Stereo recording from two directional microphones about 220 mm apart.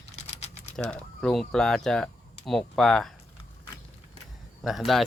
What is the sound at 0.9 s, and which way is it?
Speech, 5° left (ahead or behind).